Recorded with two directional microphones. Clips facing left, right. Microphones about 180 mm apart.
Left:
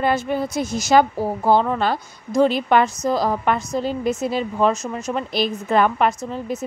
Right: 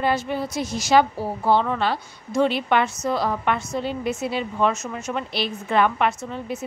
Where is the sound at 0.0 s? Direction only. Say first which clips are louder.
Left 3 dB; 50° left (ahead or behind).